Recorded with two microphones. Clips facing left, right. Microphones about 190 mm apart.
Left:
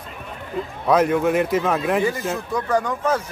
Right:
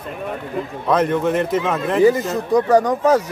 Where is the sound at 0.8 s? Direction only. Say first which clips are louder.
Even; 5° left (ahead or behind).